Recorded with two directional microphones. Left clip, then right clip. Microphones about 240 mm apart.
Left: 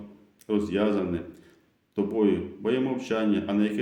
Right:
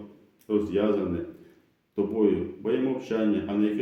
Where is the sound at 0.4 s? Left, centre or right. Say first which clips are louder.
Right 1 dB; left.